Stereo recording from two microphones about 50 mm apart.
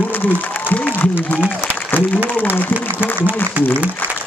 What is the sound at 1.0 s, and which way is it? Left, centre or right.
Speech, left.